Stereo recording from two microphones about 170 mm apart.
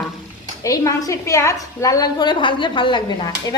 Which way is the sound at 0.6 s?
20° left (ahead or behind).